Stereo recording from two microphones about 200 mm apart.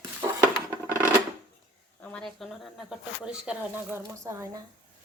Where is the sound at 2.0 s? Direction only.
5° left (ahead or behind); by 4.6 s 15° right (ahead or behind).